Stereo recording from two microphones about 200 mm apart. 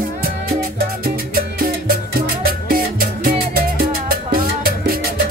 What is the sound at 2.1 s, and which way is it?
Music, 45° right (ahead or behind).